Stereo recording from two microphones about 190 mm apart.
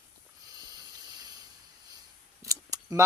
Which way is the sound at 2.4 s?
15° right (ahead or behind).